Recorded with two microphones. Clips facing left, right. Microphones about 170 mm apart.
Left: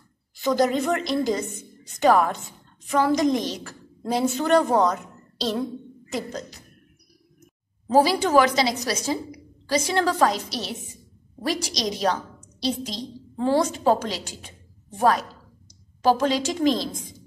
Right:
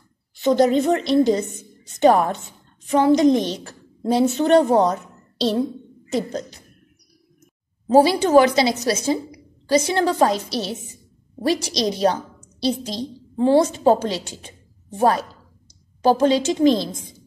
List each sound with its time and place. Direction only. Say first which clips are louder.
0.4 s a woman's voice: right 5 dB; 25° right (ahead or behind)
6.1 s a woman's voice: right 6 dB; 30° right (ahead or behind)
7.9 s a woman's voice: right 4 dB; 25° right (ahead or behind)